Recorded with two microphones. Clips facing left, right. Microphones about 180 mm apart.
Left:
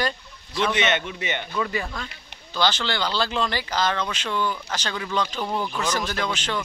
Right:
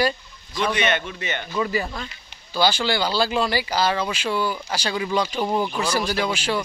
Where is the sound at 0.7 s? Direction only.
20° left (ahead or behind).